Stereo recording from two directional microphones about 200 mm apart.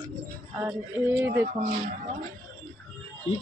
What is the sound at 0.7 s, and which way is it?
Speech, 10° right (ahead or behind).